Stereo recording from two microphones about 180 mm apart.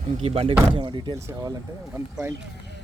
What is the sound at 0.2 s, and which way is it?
Speech, 30° right (ahead or behind).